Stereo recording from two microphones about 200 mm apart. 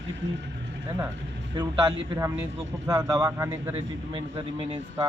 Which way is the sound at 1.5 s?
20° right (ahead or behind).